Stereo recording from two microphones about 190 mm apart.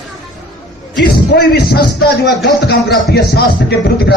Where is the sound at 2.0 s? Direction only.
60° left (ahead or behind).